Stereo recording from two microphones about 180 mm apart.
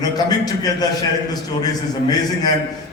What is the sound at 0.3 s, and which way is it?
A man's voice, 20° left (ahead or behind).